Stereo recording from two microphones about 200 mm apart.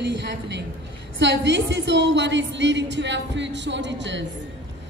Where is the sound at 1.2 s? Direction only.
60° right (ahead or behind).